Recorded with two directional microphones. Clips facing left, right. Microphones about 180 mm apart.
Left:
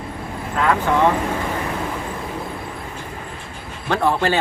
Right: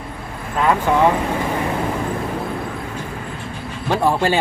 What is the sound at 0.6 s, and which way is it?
Speech, 15° right (ahead or behind).